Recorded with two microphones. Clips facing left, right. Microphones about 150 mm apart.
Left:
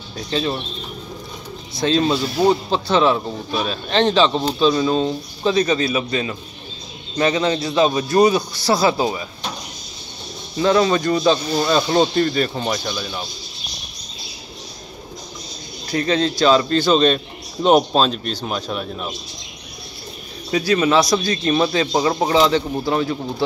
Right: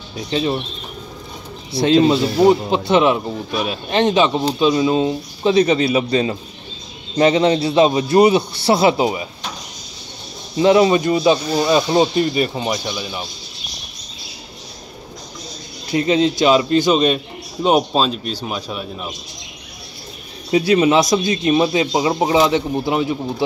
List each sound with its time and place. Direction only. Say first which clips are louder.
0.3 s speech: right 3 dB; 15° right (ahead or behind)
1.9 s a man's voice: right 5 dB; 20° right (ahead or behind)
5.5 s a man's voice: right 4 dB; 25° right (ahead or behind)
10.6 s speech: right 4 dB; 20° right (ahead or behind)
15.9 s speech: right 3 dB; 20° right (ahead or behind)
20.5 s speech: right 3 dB; 25° right (ahead or behind)